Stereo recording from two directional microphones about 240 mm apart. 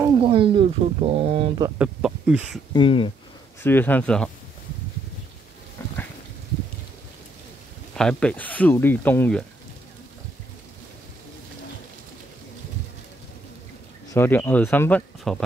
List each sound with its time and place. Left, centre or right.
0.0 s a sound: right
1.8 s speech: centre
2.7 s speech: left
3.6 s speech: centre
5.8 s a sound: centre
7.9 s speech: centre
14.1 s speech: centre